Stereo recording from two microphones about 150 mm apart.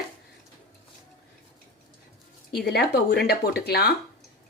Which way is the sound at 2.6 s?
90° left.